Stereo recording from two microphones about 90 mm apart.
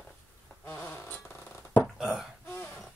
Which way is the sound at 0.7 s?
25° left (ahead or behind).